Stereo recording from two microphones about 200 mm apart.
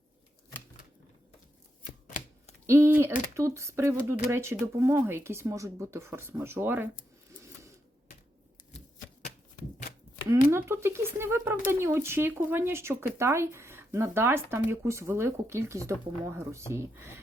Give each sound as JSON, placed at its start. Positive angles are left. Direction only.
{"t": 2.0, "sound": "typewriter", "side_deg": 40}
{"t": 2.6, "sound": "speech", "side_deg": -10}
{"t": 10.2, "sound": "speech", "side_deg": -15}